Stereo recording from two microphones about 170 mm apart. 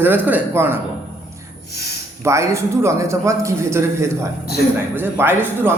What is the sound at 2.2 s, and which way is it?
A man's voice, 15° right (ahead or behind).